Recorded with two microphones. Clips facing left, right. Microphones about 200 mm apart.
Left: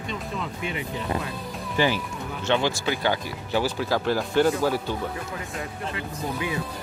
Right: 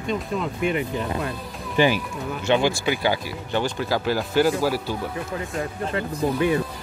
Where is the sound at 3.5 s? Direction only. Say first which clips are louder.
Even; 5° left (ahead or behind).